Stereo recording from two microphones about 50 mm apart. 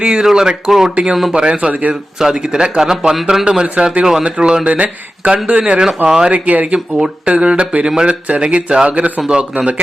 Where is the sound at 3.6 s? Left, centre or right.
Right.